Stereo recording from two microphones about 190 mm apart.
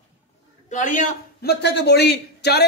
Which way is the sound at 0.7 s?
40° left (ahead or behind).